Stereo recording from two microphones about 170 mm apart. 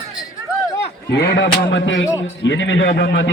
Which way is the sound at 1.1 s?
85° left.